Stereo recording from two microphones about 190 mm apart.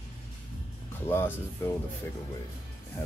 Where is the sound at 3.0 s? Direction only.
10° left (ahead or behind).